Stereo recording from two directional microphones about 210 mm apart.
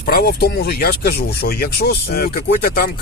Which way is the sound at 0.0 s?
45° left (ahead or behind).